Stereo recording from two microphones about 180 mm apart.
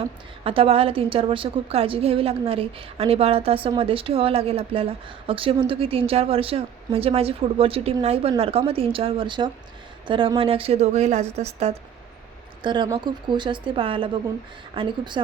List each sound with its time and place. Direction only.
0.4 s a woman's voice: 30° right (ahead or behind)
12.6 s speech: 25° right (ahead or behind)